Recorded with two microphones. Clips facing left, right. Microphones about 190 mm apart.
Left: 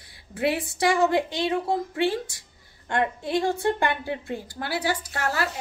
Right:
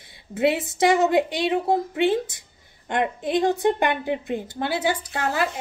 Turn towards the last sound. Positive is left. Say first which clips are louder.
# right 3 dB
turn(degrees=-20)  # may be behind; listen again after turning